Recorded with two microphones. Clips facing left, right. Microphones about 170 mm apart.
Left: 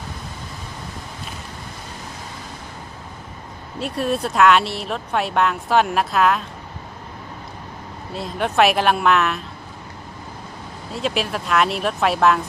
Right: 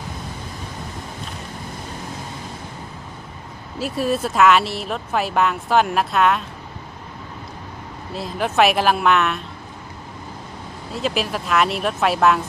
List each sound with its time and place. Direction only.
3.8 s speech: centre (ahead or behind)
8.1 s speech: centre (ahead or behind)
10.9 s speech: centre (ahead or behind)